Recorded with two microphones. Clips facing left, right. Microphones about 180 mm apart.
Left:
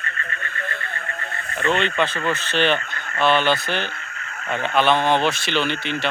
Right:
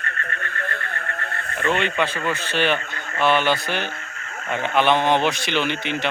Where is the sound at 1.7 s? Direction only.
10° right (ahead or behind).